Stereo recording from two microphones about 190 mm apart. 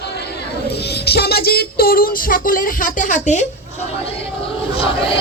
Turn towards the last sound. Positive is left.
turn(degrees=30)  # may be behind; listen again after turning